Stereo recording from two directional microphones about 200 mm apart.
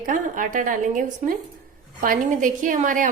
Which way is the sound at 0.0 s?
40° right (ahead or behind).